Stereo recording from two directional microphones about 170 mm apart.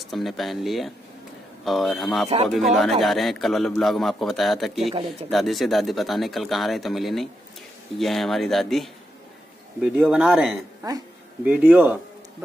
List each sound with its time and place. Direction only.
0.0 s a man's voice: centre (ahead or behind)
2.2 s a man's voice: 35° right (ahead or behind)
2.5 s a man's voice: centre (ahead or behind)